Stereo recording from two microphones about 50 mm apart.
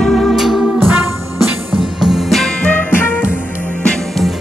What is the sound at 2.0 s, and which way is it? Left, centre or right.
Music, centre.